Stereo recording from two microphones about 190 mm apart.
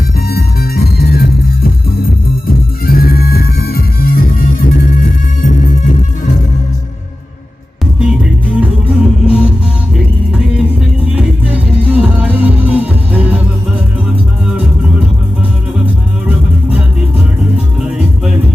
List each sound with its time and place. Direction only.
0.3 s music: 55° left (ahead or behind)
2.8 s music: 50° left (ahead or behind)
7.9 s music: 5° right (ahead or behind)
17.7 s music: 5° right (ahead or behind)